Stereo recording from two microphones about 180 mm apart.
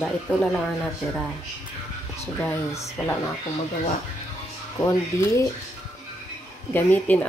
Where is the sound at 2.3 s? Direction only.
10° left (ahead or behind).